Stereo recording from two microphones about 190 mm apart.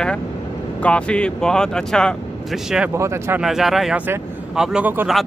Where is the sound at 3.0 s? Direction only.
15° right (ahead or behind).